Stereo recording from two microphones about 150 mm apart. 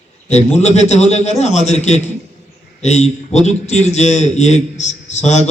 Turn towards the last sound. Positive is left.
turn(degrees=50)  # may be behind; listen again after turning